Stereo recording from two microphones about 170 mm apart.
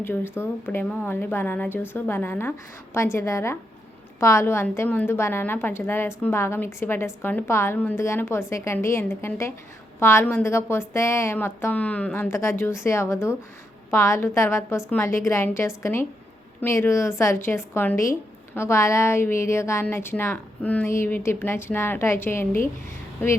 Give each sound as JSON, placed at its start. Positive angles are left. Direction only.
{"t": 0.0, "sound": "speech", "side_deg": 10}